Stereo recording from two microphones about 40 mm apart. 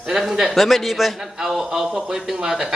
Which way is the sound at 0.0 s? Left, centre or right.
Centre.